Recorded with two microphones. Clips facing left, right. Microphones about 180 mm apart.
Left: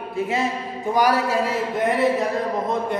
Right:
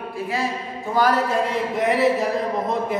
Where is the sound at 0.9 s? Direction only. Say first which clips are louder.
Even; 10° left (ahead or behind).